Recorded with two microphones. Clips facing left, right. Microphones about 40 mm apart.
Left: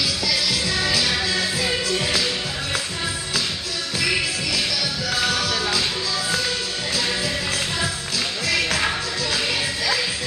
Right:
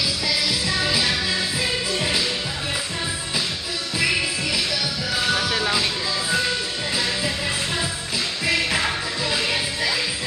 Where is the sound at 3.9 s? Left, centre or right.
Centre.